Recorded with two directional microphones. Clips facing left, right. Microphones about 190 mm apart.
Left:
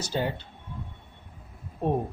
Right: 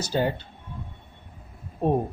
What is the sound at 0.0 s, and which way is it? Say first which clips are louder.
Speech: right 4 dB; 45° right (ahead or behind).